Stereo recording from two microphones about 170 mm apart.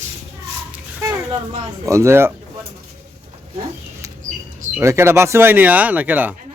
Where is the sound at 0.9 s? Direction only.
20° right (ahead or behind).